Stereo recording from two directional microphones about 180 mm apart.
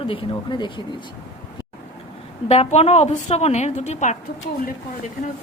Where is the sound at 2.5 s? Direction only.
35° left (ahead or behind).